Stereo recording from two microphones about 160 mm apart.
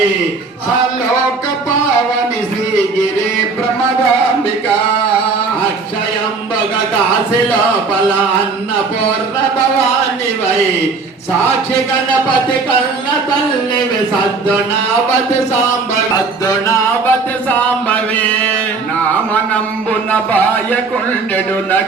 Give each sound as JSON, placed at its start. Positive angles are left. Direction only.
{"t": 16.5, "sound": "music", "side_deg": 20}
{"t": 17.8, "sound": "mantra", "side_deg": 10}